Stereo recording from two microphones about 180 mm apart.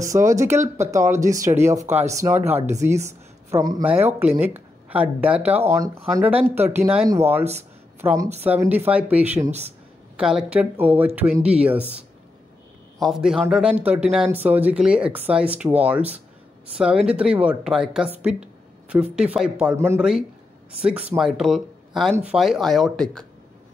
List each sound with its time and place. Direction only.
0.0 s speech: 15° right (ahead or behind)
7.5 s a sound: 15° right (ahead or behind)
8.4 s speech: 10° right (ahead or behind)
9.4 s speech: 35° right (ahead or behind)
10.1 s speech: 5° right (ahead or behind)
13.0 s speech: centre (ahead or behind)